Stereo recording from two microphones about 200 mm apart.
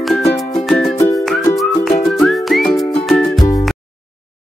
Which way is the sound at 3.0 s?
Centre (ahead or behind).